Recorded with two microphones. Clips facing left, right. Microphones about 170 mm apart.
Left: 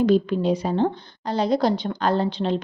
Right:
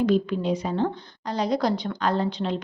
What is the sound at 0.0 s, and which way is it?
A woman's voice, 30° left (ahead or behind).